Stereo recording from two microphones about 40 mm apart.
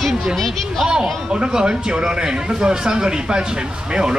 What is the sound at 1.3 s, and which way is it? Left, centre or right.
Speech, centre.